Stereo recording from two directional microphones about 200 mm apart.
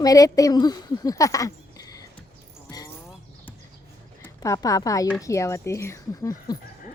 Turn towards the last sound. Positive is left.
turn(degrees=20)  # may be behind; listen again after turning